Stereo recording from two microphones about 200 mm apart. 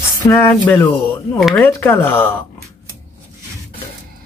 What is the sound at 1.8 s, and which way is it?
Speech, 10° left (ahead or behind).